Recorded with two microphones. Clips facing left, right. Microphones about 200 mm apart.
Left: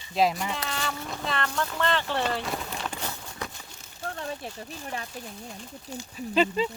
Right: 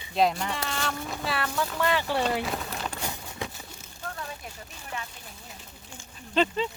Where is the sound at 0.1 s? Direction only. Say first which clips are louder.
Even; centre (ahead or behind).